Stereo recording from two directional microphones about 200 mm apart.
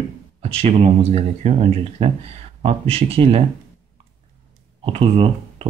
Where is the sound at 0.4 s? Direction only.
30° right (ahead or behind).